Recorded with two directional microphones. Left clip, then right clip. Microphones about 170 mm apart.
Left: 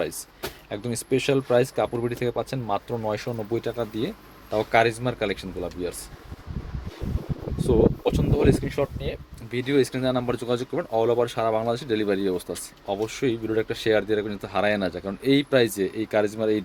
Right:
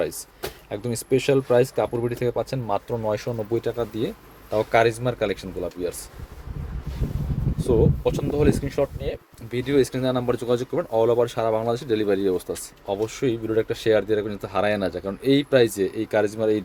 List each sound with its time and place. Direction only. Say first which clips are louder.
0.7 s speech: right 3 dB; 10° right (ahead or behind)
7.7 s speech: even; 10° right (ahead or behind)